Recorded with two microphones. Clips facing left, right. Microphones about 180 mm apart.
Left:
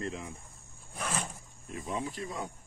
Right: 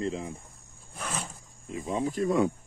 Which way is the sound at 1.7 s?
20° right (ahead or behind).